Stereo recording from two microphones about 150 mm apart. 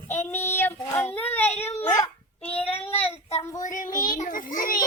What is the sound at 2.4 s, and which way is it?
Child singing, 40° left (ahead or behind).